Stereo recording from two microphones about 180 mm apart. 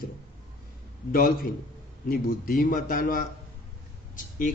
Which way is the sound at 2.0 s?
50° left (ahead or behind).